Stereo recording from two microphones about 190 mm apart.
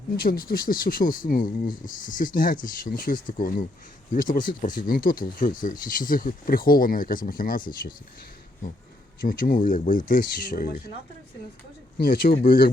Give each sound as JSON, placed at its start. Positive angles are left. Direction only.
{"t": 0.2, "sound": "speech", "side_deg": 50}
{"t": 9.2, "sound": "speech", "side_deg": 45}
{"t": 11.9, "sound": "speech", "side_deg": 50}